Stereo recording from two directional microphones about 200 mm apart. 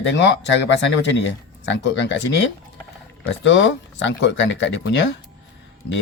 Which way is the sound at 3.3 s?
70° left (ahead or behind).